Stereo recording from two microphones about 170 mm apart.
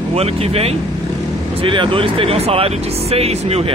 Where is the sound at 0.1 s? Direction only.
35° right (ahead or behind).